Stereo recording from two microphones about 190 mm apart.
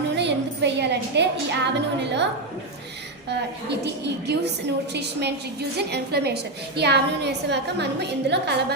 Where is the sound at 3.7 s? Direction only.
65° right (ahead or behind).